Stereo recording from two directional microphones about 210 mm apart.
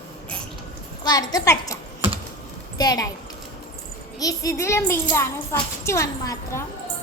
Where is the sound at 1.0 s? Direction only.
20° left (ahead or behind).